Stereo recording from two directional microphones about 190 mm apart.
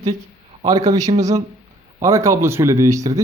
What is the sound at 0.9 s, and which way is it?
A man's voice, 20° right (ahead or behind).